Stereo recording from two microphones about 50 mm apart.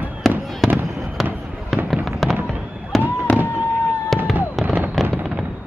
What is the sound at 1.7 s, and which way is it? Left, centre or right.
Fireworks, centre.